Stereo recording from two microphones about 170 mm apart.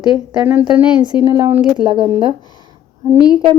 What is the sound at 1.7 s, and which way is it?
Speech, 30° right (ahead or behind).